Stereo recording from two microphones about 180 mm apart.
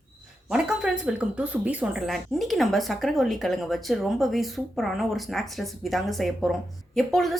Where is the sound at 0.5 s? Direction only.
5° right (ahead or behind).